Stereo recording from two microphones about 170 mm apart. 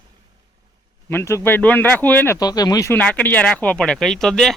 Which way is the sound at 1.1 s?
15° left (ahead or behind).